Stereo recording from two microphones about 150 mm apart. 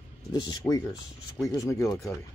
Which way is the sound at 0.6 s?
20° left (ahead or behind).